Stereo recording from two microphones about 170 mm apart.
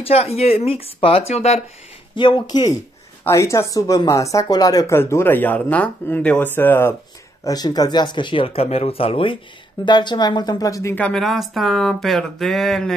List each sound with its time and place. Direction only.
0.0 s speech: 35° left (ahead or behind); by 7.0 s 15° left (ahead or behind)
7.4 s a woman's voice: 25° left (ahead or behind); by 12.9 s centre (ahead or behind)